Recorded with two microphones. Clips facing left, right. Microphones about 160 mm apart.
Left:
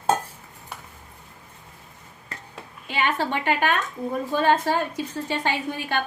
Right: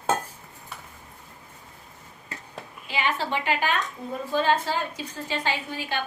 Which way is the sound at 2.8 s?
55° left (ahead or behind).